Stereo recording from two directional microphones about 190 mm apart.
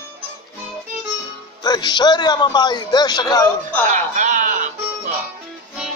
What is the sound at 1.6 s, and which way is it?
A man's voice, 20° left (ahead or behind).